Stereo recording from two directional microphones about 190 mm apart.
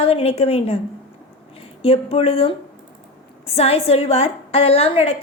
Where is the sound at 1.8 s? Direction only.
30° left (ahead or behind).